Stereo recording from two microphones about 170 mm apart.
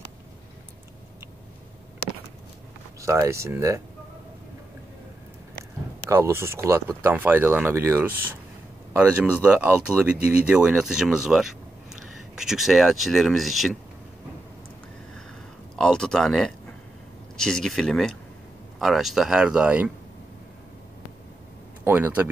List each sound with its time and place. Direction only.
3.0 s speech: 15° right (ahead or behind)
6.0 s speech: 15° right (ahead or behind); by 13.7 s centre (ahead or behind)
15.7 s speech: 5° left (ahead or behind)
21.8 s speech: 10° right (ahead or behind)